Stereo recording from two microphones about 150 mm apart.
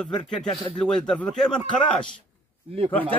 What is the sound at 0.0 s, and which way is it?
Speech, 5° left (ahead or behind).